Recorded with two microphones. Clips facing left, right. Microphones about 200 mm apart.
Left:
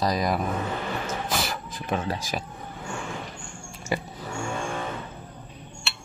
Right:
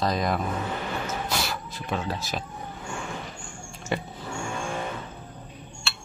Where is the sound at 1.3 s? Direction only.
20° left (ahead or behind).